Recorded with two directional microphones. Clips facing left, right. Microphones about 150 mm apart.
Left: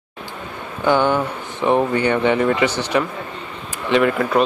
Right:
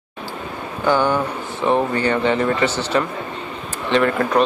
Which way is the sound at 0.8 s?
20° left (ahead or behind).